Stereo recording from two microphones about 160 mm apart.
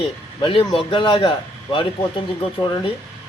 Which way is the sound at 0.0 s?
30° left (ahead or behind).